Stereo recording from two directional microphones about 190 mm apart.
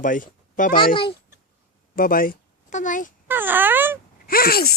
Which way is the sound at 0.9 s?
30° left (ahead or behind).